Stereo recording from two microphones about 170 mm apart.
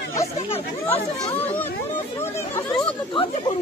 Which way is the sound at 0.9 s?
10° left (ahead or behind).